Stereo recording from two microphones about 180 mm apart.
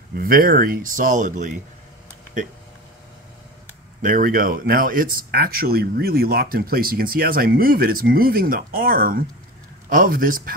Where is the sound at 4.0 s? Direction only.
50° right (ahead or behind).